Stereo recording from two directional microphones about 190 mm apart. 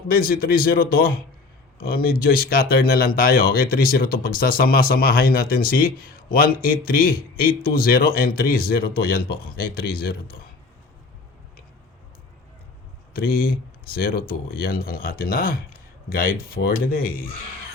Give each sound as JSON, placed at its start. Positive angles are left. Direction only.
{"t": 0.1, "sound": "speech", "side_deg": 50}
{"t": 13.1, "sound": "speech", "side_deg": 50}